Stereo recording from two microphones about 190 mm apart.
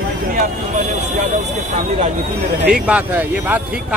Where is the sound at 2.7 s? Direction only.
5° right (ahead or behind).